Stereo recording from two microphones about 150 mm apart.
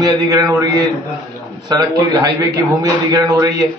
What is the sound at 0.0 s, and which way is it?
A man's voice, 25° right (ahead or behind).